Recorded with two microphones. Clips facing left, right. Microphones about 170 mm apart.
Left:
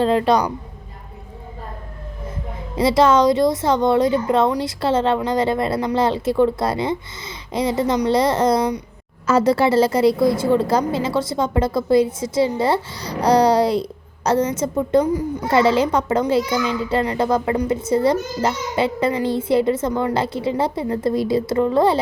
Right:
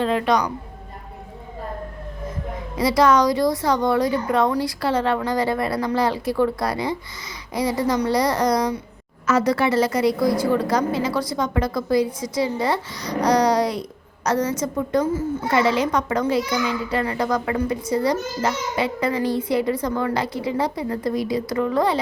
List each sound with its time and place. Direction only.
0.0 s a woman's voice: 30° left (ahead or behind)
2.7 s a woman's voice: 25° left (ahead or behind)
15.0 s a child's voice: 15° left (ahead or behind)
15.4 s a woman's voice: 30° left (ahead or behind)
20.1 s a woman's voice: 25° left (ahead or behind)